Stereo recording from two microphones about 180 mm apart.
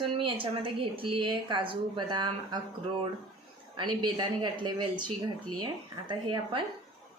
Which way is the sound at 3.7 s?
25° right (ahead or behind).